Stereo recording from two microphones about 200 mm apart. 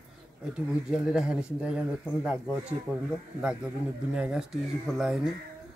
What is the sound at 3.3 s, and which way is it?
Speech, 5° right (ahead or behind).